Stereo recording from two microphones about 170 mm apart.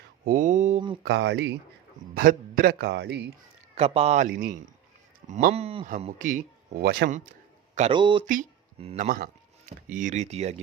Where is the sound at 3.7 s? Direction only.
35° right (ahead or behind); by 4.6 s 55° right (ahead or behind).